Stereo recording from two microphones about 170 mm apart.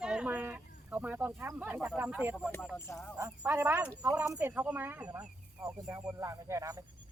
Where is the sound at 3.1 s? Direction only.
15° right (ahead or behind).